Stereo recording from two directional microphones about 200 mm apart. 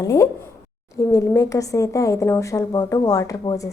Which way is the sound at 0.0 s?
15° left (ahead or behind).